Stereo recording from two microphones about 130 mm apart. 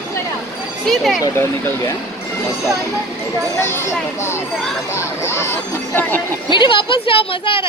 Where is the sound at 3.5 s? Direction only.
20° left (ahead or behind).